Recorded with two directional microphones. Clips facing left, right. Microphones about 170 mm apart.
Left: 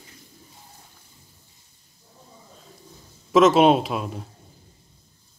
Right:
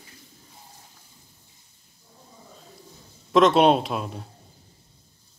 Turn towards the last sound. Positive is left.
turn(degrees=0)  # may be behind; listen again after turning